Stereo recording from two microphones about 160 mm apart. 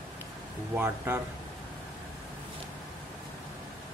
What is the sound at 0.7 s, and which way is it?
Speech, 15° right (ahead or behind).